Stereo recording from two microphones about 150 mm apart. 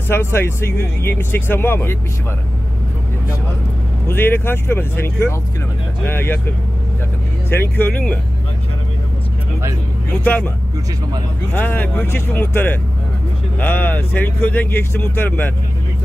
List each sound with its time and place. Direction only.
0.1 s speech: 15° left (ahead or behind)
4.1 s speech: 15° left (ahead or behind)
7.4 s speech: 15° left (ahead or behind)
10.2 s speech: 10° left (ahead or behind)
11.5 s speech: 15° left (ahead or behind)